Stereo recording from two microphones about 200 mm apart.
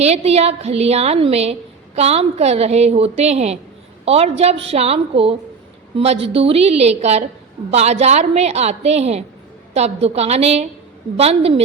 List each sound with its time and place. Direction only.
0.0 s a woman's voice: 30° right (ahead or behind)